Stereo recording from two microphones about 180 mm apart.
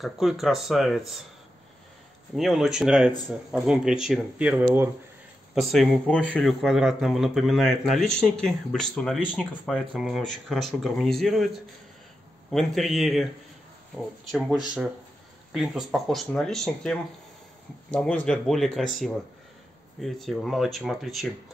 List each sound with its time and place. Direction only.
0.0 s speech: centre (ahead or behind)
2.3 s speech: centre (ahead or behind)